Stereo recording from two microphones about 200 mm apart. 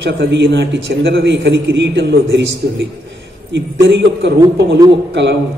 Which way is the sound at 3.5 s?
60° right (ahead or behind).